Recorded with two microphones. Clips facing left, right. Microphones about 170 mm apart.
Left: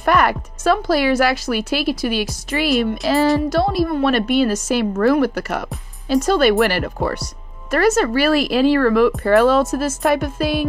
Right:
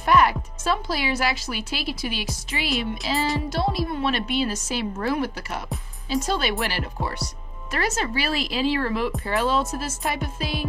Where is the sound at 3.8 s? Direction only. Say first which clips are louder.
Left 8 dB; 45° left (ahead or behind).